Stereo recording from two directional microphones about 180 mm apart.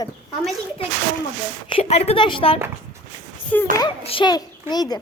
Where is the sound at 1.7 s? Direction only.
35° left (ahead or behind).